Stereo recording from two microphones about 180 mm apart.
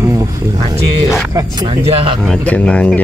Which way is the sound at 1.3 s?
25° right (ahead or behind).